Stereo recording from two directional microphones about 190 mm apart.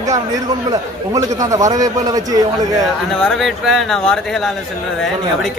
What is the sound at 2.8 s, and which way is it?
Speech, centre (ahead or behind).